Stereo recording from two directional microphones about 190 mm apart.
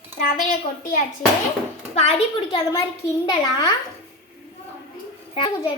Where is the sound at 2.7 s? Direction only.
20° left (ahead or behind).